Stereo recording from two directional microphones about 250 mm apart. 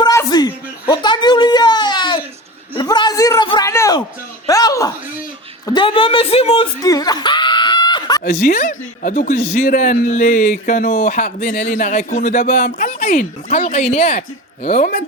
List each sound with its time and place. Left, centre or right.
0.0 s a sound: centre
5.6 s chuckle: centre
8.2 s speech: left